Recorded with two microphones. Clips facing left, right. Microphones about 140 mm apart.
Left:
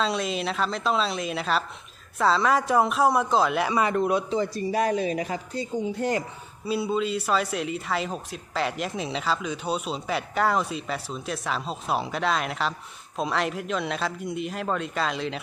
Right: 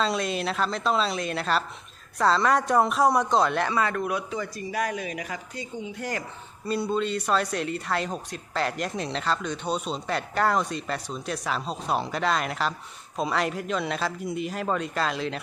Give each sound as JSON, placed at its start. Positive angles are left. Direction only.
{"t": 0.0, "sound": "speech", "side_deg": 0}
{"t": 3.8, "sound": "speech", "side_deg": 20}
{"t": 6.0, "sound": "speech", "side_deg": 25}
{"t": 6.7, "sound": "speech", "side_deg": 5}